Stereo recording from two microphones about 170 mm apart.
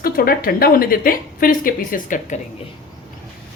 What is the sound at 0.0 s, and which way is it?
A woman's voice, 60° left (ahead or behind).